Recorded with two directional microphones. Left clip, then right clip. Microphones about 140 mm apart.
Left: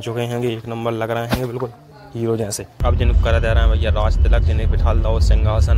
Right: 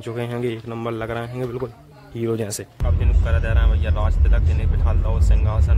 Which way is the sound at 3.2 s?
45° left (ahead or behind).